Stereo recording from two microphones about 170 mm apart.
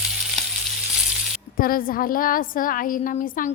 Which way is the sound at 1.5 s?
55° left (ahead or behind).